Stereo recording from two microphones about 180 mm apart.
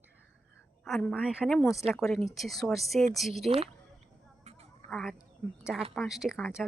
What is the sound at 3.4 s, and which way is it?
Speech, 35° right (ahead or behind).